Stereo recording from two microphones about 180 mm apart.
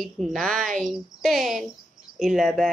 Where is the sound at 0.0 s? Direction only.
Centre (ahead or behind).